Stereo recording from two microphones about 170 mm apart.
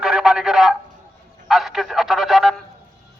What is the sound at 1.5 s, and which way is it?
Telephone, centre (ahead or behind).